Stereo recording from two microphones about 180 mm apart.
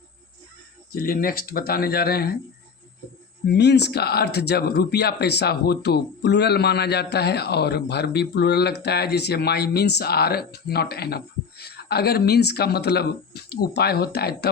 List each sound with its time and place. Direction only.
0.9 s speech: 50° left (ahead or behind)
3.5 s speech: 70° left (ahead or behind)